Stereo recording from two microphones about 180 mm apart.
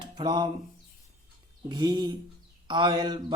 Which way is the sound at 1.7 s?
25° right (ahead or behind).